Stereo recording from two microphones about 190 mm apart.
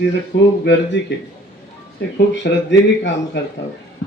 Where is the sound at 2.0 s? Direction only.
70° left (ahead or behind).